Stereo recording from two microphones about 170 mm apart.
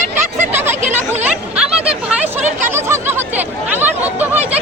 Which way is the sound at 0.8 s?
45° right (ahead or behind).